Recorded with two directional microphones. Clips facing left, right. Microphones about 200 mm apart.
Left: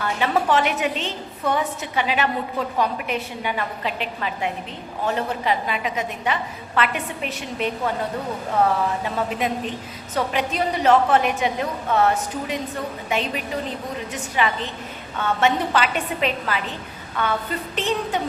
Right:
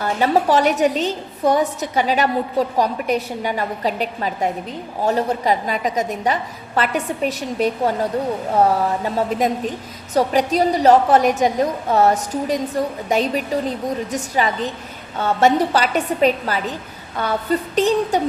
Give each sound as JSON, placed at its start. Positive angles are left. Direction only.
{"t": 0.0, "sound": "a woman's voice", "side_deg": -40}